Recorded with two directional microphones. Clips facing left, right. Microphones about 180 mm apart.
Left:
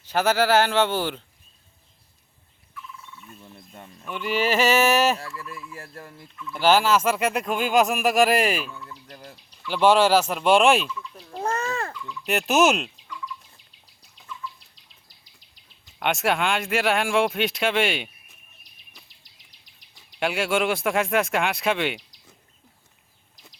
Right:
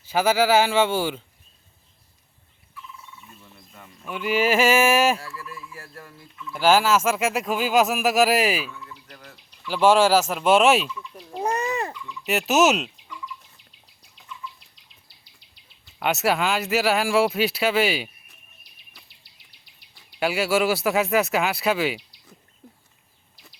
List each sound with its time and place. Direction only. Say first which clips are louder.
0.0 s speech: right 1 dB; 10° right (ahead or behind)
3.4 s a sound: left 4 dB; 30° left (ahead or behind)
4.0 s speech: right 2 dB; 5° right (ahead or behind)
5.2 s turkey: left 1 dB; 25° left (ahead or behind)
6.5 s speech: even; 5° right (ahead or behind)
8.7 s turkey: left 1 dB; 30° left (ahead or behind)
9.6 s turkey: right 1 dB; 5° right (ahead or behind)
12.2 s fowl: right 1 dB; 5° right (ahead or behind)
16.0 s speech: right 1 dB; 5° right (ahead or behind)
20.1 s speech: right 2 dB; 5° right (ahead or behind)